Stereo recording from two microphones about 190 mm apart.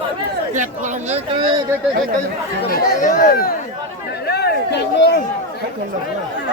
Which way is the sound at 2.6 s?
50° left (ahead or behind).